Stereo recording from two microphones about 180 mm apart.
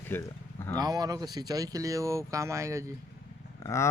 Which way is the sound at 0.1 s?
15° left (ahead or behind).